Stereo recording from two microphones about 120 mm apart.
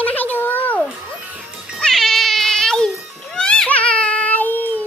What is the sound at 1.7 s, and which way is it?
Cat, 5° left (ahead or behind).